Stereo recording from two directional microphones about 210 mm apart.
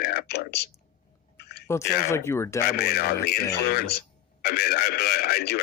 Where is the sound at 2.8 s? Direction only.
45° left (ahead or behind).